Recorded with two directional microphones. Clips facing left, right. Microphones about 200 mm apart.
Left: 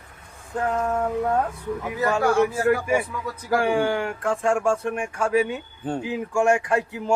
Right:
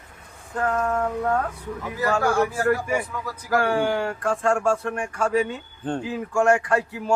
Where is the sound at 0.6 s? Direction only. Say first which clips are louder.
Even; 15° left (ahead or behind).